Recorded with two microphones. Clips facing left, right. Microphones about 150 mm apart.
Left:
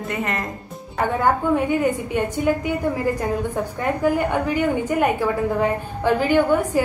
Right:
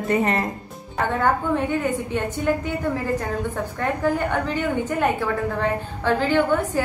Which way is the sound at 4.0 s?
10° left (ahead or behind).